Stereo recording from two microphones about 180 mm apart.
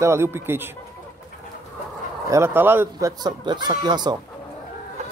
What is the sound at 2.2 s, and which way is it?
Speech, 15° right (ahead or behind).